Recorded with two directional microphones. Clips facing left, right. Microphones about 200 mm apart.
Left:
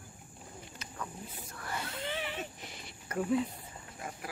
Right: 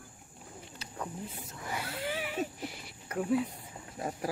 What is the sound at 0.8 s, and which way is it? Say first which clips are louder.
Speech: right 4 dB; 30° right (ahead or behind).